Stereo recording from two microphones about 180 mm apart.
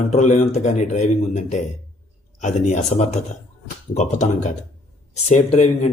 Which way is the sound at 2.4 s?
40° left (ahead or behind).